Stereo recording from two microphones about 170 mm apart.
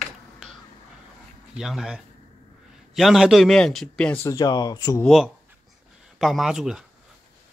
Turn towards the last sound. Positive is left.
turn(degrees=-5)  # may be behind; listen again after turning